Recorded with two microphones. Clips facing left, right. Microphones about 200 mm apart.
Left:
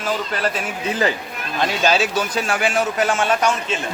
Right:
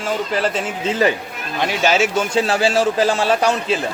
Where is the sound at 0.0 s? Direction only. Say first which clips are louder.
Right 2 dB; 30° right (ahead or behind).